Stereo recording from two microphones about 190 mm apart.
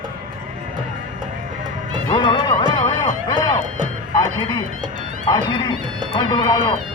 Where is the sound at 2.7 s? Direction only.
25° left (ahead or behind).